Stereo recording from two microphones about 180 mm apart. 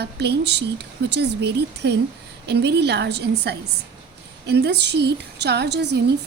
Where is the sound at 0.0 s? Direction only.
65° right (ahead or behind).